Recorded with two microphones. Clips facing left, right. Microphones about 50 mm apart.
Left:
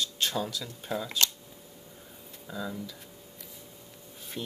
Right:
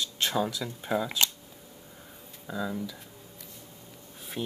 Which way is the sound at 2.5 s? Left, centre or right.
Centre.